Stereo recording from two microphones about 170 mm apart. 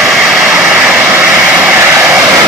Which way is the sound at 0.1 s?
Centre (ahead or behind).